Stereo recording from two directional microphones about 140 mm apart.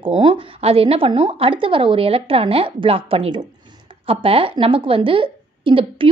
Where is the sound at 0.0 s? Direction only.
40° right (ahead or behind).